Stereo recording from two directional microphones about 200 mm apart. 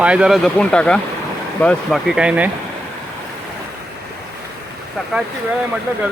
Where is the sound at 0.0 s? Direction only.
5° right (ahead or behind).